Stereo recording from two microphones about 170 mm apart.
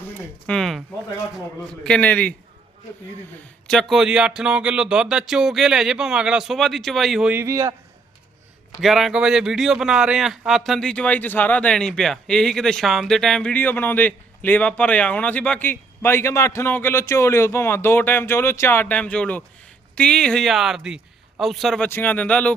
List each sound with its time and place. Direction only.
0.0 s a sound: 10° left (ahead or behind)
1.8 s a man's voice: 5° left (ahead or behind)
3.7 s speech: centre (ahead or behind); by 7.8 s 15° right (ahead or behind)
8.8 s a man's voice: centre (ahead or behind)